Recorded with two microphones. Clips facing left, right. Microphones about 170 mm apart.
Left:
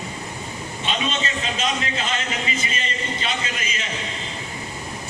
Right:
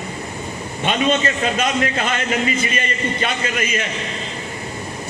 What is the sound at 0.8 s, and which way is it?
A man's voice, 55° right (ahead or behind).